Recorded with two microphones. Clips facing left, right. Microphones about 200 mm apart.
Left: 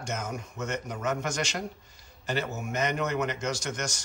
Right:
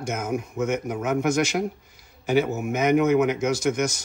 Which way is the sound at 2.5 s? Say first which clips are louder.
Right 6 dB; 55° right (ahead or behind).